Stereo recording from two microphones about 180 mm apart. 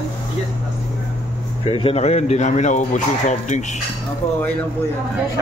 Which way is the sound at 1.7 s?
30° left (ahead or behind).